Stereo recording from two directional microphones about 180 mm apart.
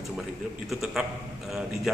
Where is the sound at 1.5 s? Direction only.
5° right (ahead or behind).